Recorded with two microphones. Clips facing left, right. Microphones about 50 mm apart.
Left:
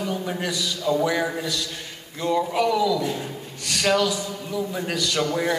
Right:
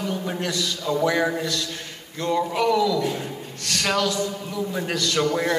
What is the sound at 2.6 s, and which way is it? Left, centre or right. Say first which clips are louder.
Speech: right 4 dB; centre.